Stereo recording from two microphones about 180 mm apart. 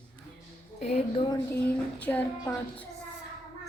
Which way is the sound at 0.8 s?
35° left (ahead or behind).